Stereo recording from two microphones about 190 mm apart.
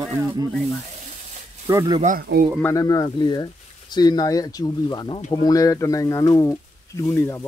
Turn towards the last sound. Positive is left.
turn(degrees=10)  # may be behind; listen again after turning